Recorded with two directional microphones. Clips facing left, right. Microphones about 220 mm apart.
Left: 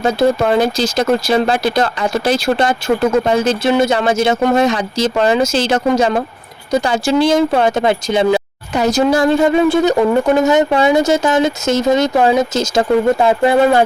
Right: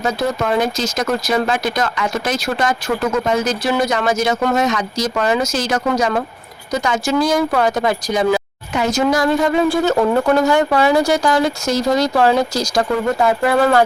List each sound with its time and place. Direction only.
0.0 s speech: 30° left (ahead or behind)